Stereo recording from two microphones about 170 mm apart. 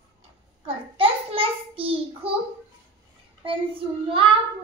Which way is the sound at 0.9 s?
30° right (ahead or behind).